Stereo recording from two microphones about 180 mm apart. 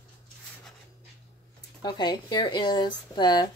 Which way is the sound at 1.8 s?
25° left (ahead or behind).